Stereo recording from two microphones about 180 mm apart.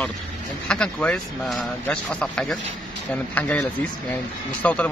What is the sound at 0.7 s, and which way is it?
Speech, 5° left (ahead or behind).